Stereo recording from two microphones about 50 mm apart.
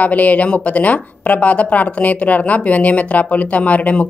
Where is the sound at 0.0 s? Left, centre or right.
Left.